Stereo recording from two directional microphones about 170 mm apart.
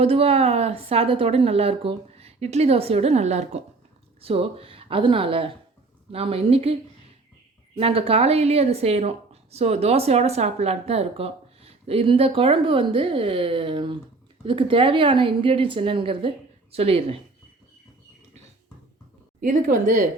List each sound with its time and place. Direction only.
0.0 s a woman's voice: 35° right (ahead or behind)
7.8 s a woman's voice: 35° right (ahead or behind)
19.4 s a woman's voice: 50° right (ahead or behind)